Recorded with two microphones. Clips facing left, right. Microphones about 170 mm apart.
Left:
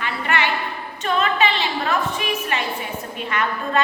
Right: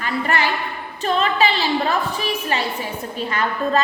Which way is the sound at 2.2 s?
30° right (ahead or behind).